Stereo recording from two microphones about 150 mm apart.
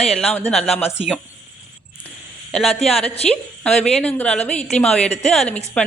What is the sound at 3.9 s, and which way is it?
A woman's voice, 5° left (ahead or behind).